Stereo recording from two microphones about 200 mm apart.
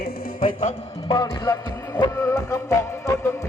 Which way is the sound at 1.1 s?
20° left (ahead or behind).